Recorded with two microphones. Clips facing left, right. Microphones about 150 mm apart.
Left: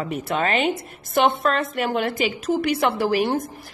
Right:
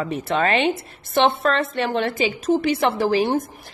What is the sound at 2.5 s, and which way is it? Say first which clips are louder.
Speech: left 1 dB; 25° right (ahead or behind).